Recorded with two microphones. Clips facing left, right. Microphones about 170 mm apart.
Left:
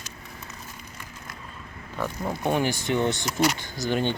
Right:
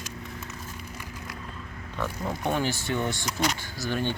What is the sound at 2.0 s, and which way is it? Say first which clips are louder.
Speech: left 2 dB; 15° left (ahead or behind).